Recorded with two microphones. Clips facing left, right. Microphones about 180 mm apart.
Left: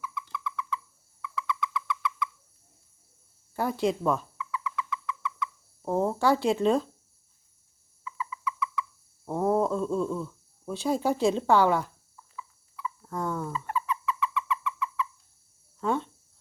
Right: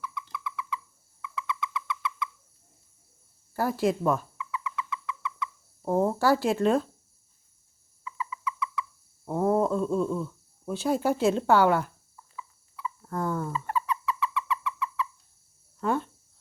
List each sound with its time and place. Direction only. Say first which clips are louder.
0.0 s owl: left 1 dB; centre (ahead or behind)
1.2 s owl: left 1 dB; 20° right (ahead or behind)
3.5 s speech: right 1 dB; 5° right (ahead or behind)
4.4 s owl: left 1 dB; 25° right (ahead or behind)
5.8 s speech: right 1 dB; 5° right (ahead or behind)
8.0 s a sound: even; 25° right (ahead or behind)
9.2 s speech: right 1 dB; centre (ahead or behind)
13.0 s speech: right 2 dB; centre (ahead or behind)
13.5 s a sound: right 1 dB; 35° right (ahead or behind)
15.8 s speech: right 1 dB; 5° right (ahead or behind)